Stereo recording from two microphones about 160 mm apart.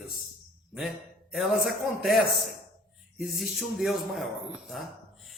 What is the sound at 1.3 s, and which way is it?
A man's voice, centre (ahead or behind).